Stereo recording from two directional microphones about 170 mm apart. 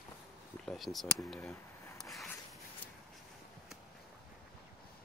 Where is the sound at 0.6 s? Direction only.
Centre (ahead or behind).